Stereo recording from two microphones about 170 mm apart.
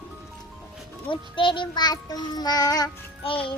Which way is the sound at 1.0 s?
30° left (ahead or behind).